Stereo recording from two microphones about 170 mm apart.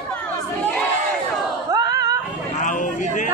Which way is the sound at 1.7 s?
20° right (ahead or behind).